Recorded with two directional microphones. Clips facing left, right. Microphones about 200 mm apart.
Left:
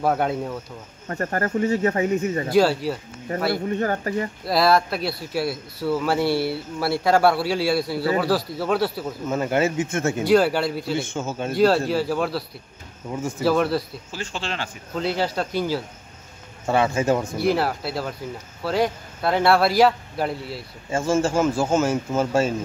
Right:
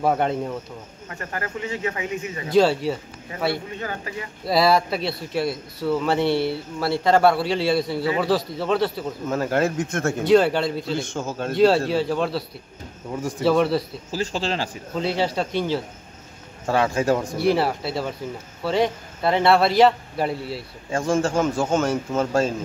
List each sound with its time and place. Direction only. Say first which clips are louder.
0.0 s speech: right 1 dB; 5° left (ahead or behind)
1.0 s speech: left 7 dB; 45° left (ahead or behind)
2.5 s speech: right 2 dB; 5° left (ahead or behind)
3.6 s speech: left 8 dB; 45° left (ahead or behind)
4.5 s a man's voice: right 1 dB; centre (ahead or behind)
14.1 s speech: right 5 dB; 35° right (ahead or behind)
15.0 s speech: right 1 dB; centre (ahead or behind)